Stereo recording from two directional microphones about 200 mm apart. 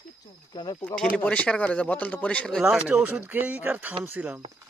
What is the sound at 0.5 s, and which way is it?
Speech, 20° left (ahead or behind).